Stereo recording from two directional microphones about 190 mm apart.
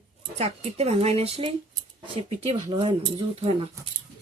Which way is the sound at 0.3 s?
35° right (ahead or behind).